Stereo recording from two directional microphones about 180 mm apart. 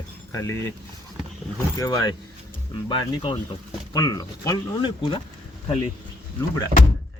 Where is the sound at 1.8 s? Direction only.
20° left (ahead or behind).